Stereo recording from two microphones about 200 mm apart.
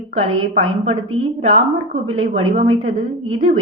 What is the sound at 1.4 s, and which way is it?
A woman's voice, 30° right (ahead or behind).